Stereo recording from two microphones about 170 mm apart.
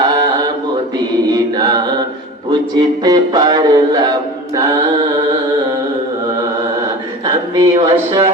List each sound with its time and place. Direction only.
0.1 s mantra: 25° right (ahead or behind)
2.5 s music: 25° right (ahead or behind)
7.5 s music: 25° right (ahead or behind)